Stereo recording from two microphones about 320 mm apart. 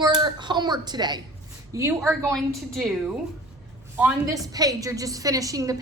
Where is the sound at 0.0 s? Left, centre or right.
Centre.